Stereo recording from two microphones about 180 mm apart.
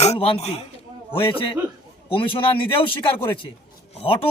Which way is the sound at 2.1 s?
30° left (ahead or behind).